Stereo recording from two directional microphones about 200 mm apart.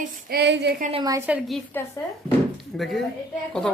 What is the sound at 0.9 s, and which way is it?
Speech, 20° right (ahead or behind).